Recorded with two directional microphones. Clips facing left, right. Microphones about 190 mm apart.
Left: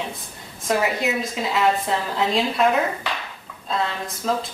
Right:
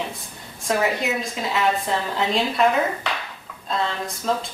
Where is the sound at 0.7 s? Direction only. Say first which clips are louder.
Even; centre (ahead or behind).